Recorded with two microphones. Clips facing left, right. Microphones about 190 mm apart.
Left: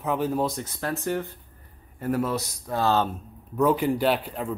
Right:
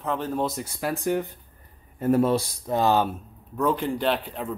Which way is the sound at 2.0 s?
25° right (ahead or behind).